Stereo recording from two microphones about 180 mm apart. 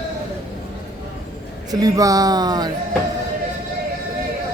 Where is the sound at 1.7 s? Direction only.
20° right (ahead or behind).